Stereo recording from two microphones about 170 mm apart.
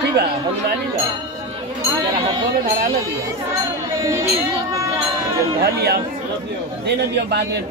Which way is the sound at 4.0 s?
15° right (ahead or behind).